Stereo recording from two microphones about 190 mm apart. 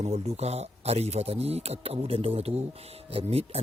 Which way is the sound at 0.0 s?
35° right (ahead or behind).